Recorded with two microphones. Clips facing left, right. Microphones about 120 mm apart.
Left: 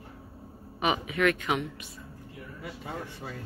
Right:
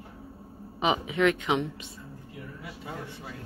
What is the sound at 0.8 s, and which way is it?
Speech, 20° right (ahead or behind).